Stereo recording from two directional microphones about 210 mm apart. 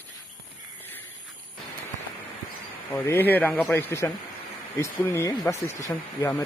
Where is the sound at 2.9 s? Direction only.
10° left (ahead or behind).